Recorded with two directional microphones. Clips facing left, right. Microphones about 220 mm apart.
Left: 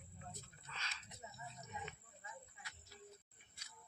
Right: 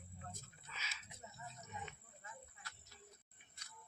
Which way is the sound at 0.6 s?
5° right (ahead or behind).